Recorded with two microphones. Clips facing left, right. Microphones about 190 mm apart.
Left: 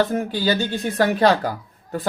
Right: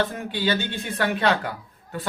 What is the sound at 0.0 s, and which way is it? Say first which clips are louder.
Speech: left 5 dB; 40° left (ahead or behind).